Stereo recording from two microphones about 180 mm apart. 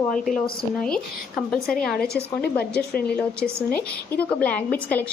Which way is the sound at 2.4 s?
60° left (ahead or behind).